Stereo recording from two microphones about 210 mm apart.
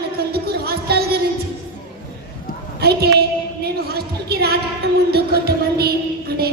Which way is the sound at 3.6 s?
50° right (ahead or behind).